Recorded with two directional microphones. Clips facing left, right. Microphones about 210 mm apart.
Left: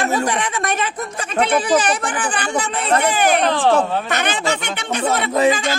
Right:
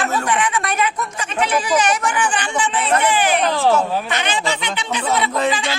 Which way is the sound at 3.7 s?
45° left (ahead or behind).